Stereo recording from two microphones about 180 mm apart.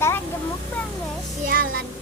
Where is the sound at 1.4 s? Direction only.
50° right (ahead or behind).